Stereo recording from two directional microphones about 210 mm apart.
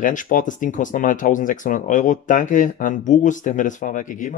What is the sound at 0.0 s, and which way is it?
Speech, 40° left (ahead or behind).